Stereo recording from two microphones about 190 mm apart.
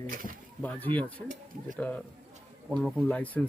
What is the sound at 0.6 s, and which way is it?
Speech, 10° left (ahead or behind).